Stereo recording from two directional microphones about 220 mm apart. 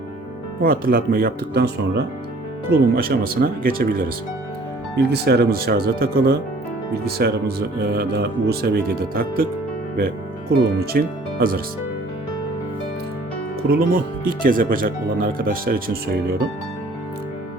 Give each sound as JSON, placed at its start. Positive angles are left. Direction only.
{"t": 0.6, "sound": "speech", "side_deg": -40}
{"t": 10.5, "sound": "speech", "side_deg": -45}
{"t": 13.6, "sound": "speech", "side_deg": -40}